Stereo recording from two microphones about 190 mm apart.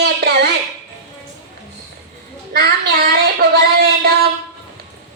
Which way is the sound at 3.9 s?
55° right (ahead or behind).